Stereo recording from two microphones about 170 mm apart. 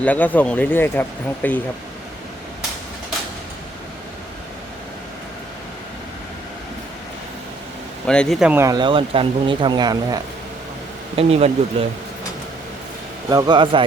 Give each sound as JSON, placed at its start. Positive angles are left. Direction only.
{"t": 0.0, "sound": "speech", "side_deg": 10}
{"t": 8.0, "sound": "speech", "side_deg": 5}
{"t": 8.6, "sound": "speech", "side_deg": -25}
{"t": 11.2, "sound": "speech", "side_deg": -35}
{"t": 13.3, "sound": "speech", "side_deg": -25}